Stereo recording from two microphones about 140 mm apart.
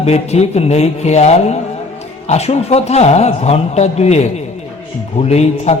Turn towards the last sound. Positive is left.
turn(degrees=50)  # may be behind; listen again after turning